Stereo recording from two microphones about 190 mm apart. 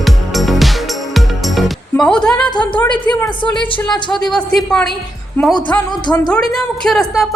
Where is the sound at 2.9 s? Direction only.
20° left (ahead or behind).